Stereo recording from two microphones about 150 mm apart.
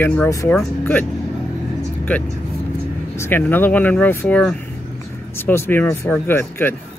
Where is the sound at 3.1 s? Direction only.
15° left (ahead or behind).